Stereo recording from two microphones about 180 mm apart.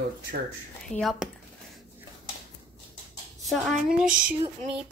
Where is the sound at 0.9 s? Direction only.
Centre (ahead or behind).